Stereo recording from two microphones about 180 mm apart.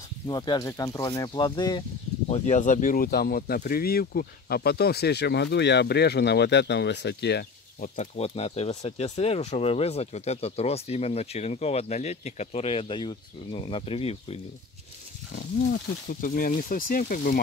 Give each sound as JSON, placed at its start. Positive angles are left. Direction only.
{"t": 0.3, "sound": "speech", "side_deg": 20}
{"t": 2.2, "sound": "speech", "side_deg": 35}
{"t": 7.8, "sound": "speech", "side_deg": 40}
{"t": 15.3, "sound": "speech", "side_deg": 50}